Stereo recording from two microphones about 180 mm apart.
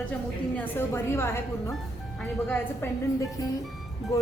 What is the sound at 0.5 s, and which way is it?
A woman's voice, 10° left (ahead or behind).